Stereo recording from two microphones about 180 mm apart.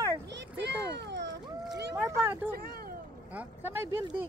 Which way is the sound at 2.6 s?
55° right (ahead or behind).